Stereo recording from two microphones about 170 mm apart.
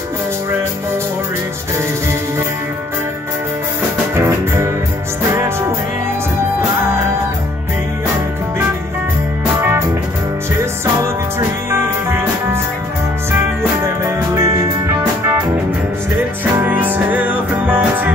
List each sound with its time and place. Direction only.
4.1 s music: 15° right (ahead or behind)
11.3 s music: 15° right (ahead or behind)
14.0 s music: 15° right (ahead or behind)